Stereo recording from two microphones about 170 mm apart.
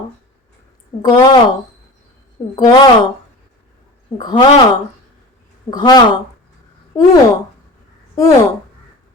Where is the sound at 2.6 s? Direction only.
25° left (ahead or behind).